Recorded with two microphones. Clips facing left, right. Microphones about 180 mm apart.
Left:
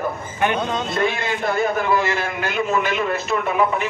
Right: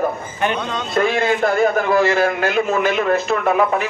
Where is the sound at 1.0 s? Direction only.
45° right (ahead or behind).